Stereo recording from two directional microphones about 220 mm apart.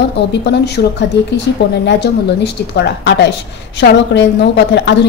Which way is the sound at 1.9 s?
50° left (ahead or behind).